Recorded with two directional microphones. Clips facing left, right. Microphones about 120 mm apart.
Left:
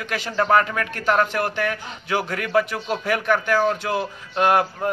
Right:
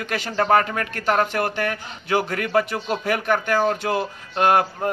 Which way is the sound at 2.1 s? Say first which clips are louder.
Right 1 dB; 30° right (ahead or behind).